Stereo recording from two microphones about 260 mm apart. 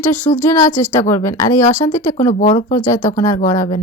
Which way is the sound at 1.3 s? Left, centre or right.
Centre.